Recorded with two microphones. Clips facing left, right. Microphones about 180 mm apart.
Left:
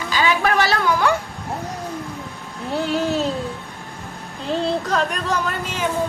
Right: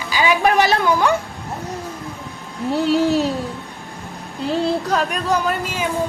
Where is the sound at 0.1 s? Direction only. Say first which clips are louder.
Right 3 dB; 15° right (ahead or behind).